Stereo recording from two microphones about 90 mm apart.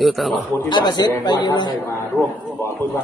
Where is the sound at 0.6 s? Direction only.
55° left (ahead or behind).